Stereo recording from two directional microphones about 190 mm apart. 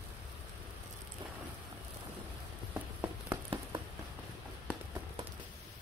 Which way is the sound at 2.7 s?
10° right (ahead or behind).